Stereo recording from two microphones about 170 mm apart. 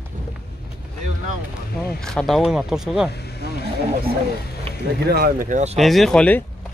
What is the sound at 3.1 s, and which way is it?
Speech, 70° left (ahead or behind).